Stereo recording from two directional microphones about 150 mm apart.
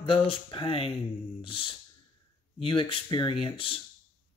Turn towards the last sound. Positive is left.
turn(degrees=40)  # may be behind; listen again after turning